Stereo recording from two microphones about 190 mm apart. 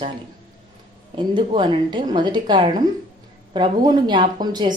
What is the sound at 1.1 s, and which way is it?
Speech, 25° right (ahead or behind).